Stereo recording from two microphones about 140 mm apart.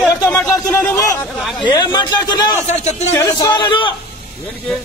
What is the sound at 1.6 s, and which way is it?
Speech, 30° left (ahead or behind).